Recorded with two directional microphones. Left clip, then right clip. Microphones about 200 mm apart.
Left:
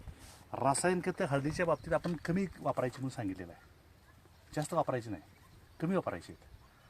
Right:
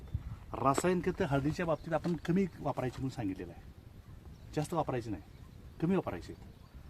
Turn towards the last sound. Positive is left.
turn(degrees=20)  # may be behind; listen again after turning